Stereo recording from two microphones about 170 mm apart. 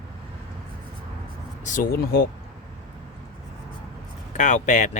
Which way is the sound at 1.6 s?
50° left (ahead or behind).